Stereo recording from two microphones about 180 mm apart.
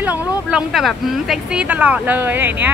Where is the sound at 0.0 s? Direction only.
10° right (ahead or behind).